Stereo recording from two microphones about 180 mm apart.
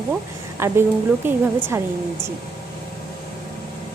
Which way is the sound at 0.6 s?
15° right (ahead or behind).